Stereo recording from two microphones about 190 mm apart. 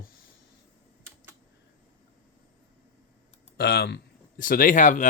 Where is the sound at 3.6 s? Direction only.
55° left (ahead or behind); by 5.1 s 40° left (ahead or behind).